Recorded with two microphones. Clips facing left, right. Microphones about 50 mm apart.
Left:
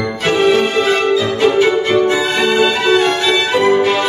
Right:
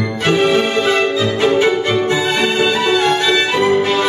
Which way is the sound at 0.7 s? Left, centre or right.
Centre.